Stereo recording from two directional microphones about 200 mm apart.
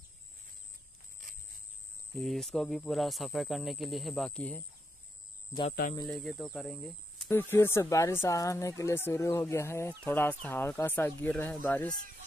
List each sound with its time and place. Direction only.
2.1 s speech: centre (ahead or behind)
5.6 s speech: 40° left (ahead or behind)
6.0 s speech: centre (ahead or behind)